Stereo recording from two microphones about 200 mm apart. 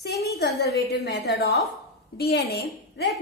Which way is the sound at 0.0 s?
50° left (ahead or behind).